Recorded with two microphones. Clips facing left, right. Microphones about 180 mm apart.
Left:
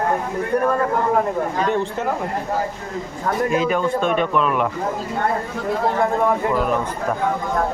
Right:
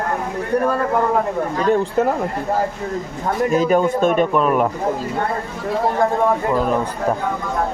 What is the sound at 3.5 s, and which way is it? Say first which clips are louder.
A man's voice: right 6 dB; 40° right (ahead or behind).